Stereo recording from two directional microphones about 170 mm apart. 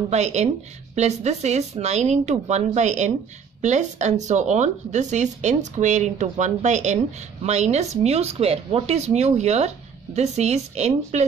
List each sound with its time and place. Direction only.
0.1 s speech: 40° right (ahead or behind)